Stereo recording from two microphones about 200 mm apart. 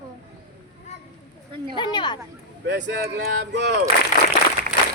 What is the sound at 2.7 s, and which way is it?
Speech, 65° right (ahead or behind).